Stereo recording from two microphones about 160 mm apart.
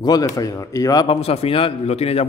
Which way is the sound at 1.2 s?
40° left (ahead or behind).